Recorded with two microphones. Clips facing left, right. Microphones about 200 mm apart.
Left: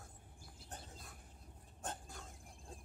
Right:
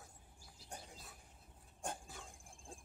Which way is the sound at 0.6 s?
10° right (ahead or behind).